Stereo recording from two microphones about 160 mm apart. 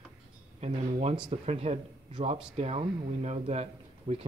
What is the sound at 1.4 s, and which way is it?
A man's voice, 40° right (ahead or behind).